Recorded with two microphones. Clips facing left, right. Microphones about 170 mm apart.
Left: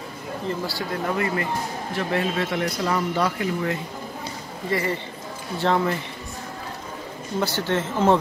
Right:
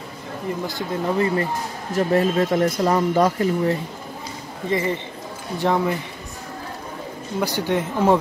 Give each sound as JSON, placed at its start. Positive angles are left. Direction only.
{"t": 0.7, "sound": "speech", "side_deg": -20}
{"t": 1.2, "sound": "speech", "side_deg": -30}
{"t": 1.9, "sound": "speech", "side_deg": -40}
{"t": 4.6, "sound": "speech", "side_deg": -20}
{"t": 7.3, "sound": "speech", "side_deg": -15}